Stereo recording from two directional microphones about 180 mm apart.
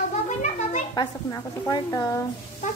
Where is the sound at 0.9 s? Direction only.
20° left (ahead or behind).